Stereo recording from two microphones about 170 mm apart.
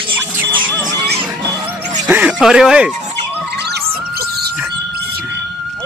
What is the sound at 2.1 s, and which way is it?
Music, 10° right (ahead or behind).